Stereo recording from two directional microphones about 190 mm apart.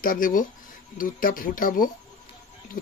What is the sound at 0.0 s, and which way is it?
Speech, 45° left (ahead or behind).